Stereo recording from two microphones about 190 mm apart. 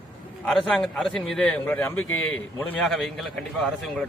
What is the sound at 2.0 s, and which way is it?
Speech, 90° left.